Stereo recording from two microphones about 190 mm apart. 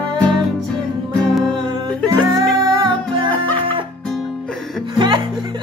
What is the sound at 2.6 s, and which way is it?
Music, 20° right (ahead or behind).